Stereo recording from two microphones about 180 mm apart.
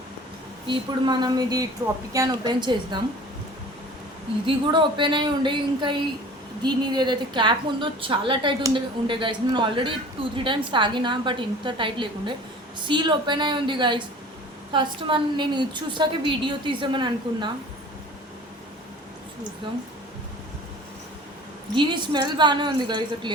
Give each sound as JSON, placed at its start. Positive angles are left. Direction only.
{"t": 0.7, "sound": "a woman's voice", "side_deg": -25}
{"t": 4.4, "sound": "a woman's voice", "side_deg": -25}
{"t": 21.8, "sound": "a woman's voice", "side_deg": -25}